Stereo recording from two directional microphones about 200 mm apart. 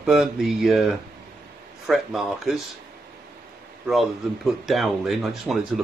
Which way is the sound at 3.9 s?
Centre (ahead or behind).